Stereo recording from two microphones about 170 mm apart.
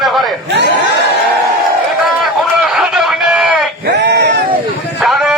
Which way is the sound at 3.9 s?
85° right.